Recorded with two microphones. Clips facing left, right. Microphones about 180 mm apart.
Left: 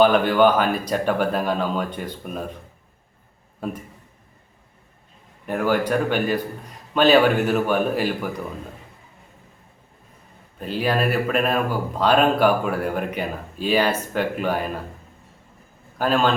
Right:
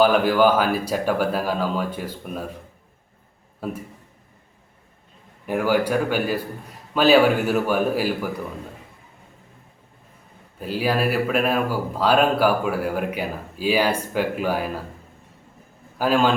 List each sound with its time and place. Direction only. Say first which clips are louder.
0.0 s speech: left 1 dB; 5° right (ahead or behind)
5.5 s speech: right 1 dB; 10° right (ahead or behind)
10.6 s speech: even; 5° right (ahead or behind)
16.0 s speech: right 1 dB; 10° right (ahead or behind)